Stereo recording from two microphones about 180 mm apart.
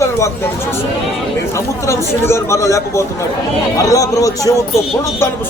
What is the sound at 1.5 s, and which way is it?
A man's voice, 15° left (ahead or behind).